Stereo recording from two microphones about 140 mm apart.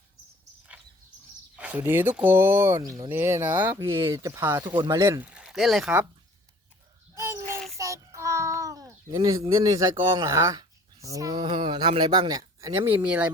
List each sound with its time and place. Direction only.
1.5 s speech: 10° right (ahead or behind)
5.2 s speech: 10° right (ahead or behind)
7.2 s a sound: 20° right (ahead or behind)
9.6 s speech: 25° right (ahead or behind)
11.3 s speech: 40° right (ahead or behind)
12.8 s speech: 10° right (ahead or behind)